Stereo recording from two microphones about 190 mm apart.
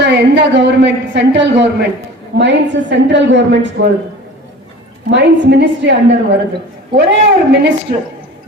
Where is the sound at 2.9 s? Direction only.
70° right (ahead or behind).